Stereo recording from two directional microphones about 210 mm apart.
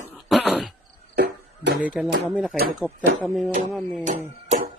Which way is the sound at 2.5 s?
45° right (ahead or behind).